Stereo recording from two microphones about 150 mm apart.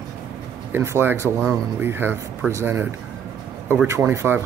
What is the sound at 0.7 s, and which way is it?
Speech, 15° right (ahead or behind).